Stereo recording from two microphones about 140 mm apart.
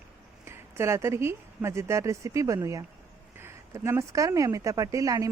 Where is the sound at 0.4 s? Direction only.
20° right (ahead or behind).